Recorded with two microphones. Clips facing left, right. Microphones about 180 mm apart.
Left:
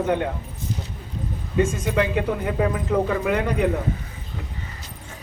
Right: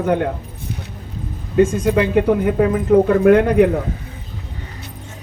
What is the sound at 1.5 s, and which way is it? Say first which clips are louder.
Speech: right 7 dB; 60° right (ahead or behind).